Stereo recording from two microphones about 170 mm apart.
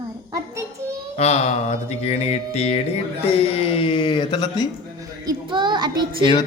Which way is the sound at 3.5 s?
35° left (ahead or behind).